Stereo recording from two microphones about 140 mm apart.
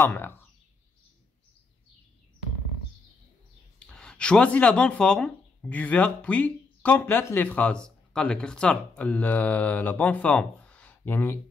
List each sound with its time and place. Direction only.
0.0 s speech: 15° left (ahead or behind)
3.8 s speech: 5° left (ahead or behind)